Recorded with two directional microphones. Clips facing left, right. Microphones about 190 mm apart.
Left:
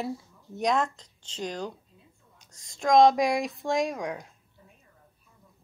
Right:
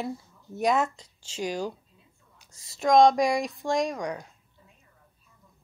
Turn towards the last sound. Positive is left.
turn(degrees=0)  # may be behind; listen again after turning